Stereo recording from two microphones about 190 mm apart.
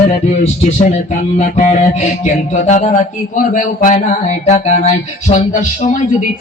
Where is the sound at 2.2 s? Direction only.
40° left (ahead or behind).